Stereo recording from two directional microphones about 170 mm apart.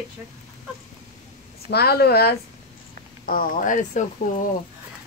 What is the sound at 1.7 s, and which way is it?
Speech, 65° left (ahead or behind).